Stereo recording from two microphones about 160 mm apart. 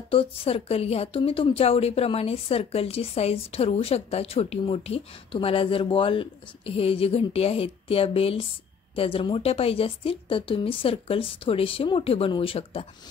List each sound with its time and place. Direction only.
0.1 s a woman's voice: 35° left (ahead or behind)